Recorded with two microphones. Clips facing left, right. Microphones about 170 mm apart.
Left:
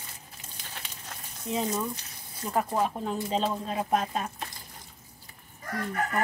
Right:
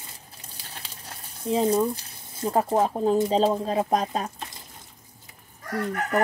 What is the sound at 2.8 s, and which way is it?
Speech, 35° right (ahead or behind).